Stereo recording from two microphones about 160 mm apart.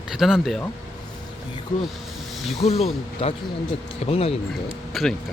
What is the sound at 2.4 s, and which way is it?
Speech, centre (ahead or behind).